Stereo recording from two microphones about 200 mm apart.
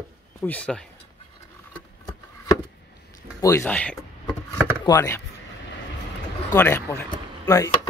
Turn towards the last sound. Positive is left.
turn(degrees=15)  # may be behind; listen again after turning